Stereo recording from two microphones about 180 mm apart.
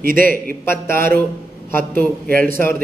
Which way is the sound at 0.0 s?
50° right (ahead or behind).